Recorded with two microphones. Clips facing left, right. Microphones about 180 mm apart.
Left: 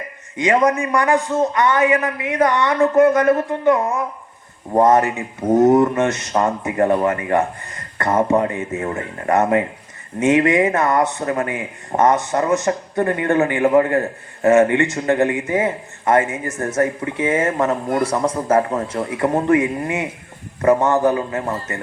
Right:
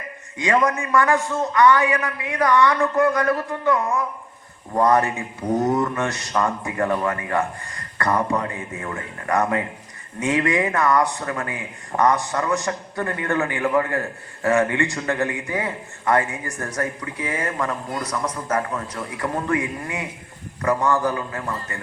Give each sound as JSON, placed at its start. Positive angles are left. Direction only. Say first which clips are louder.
{"t": 0.3, "sound": "a man's voice", "louder": "left 4 dB", "side_deg": 20}
{"t": 5.4, "sound": "mantra", "louder": "left 7 dB", "side_deg": 45}
{"t": 5.6, "sound": "a man's voice", "louder": "left 8 dB", "side_deg": 20}
{"t": 17.7, "sound": "speech", "louder": "left 8 dB", "side_deg": 55}
{"t": 18.0, "sound": "a man's voice", "louder": "left 8 dB", "side_deg": 30}